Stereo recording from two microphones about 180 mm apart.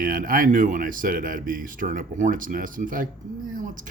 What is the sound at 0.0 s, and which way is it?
Speech, 55° right (ahead or behind).